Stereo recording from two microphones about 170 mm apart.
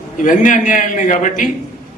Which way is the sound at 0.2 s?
50° left (ahead or behind).